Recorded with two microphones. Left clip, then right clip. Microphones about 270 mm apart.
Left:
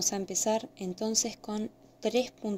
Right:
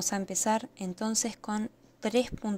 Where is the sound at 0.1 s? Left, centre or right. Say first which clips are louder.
Right 1 dB; right.